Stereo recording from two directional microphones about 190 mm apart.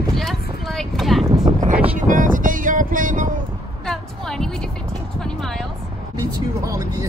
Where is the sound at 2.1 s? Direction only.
45° right (ahead or behind).